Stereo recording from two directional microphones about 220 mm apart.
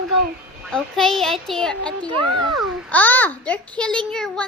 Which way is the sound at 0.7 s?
Centre (ahead or behind).